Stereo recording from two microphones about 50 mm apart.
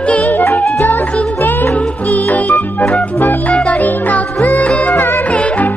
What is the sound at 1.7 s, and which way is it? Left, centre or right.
Music, left.